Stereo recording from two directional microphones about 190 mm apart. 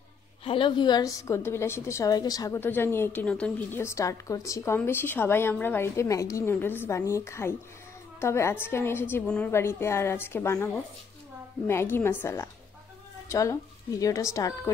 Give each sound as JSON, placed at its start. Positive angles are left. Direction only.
{"t": 0.4, "sound": "a woman's voice", "side_deg": 30}